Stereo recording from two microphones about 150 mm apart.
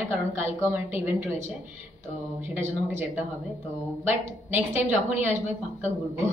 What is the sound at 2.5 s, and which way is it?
Speech, 15° right (ahead or behind).